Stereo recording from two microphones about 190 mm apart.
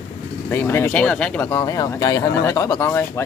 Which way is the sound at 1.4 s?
20° left (ahead or behind).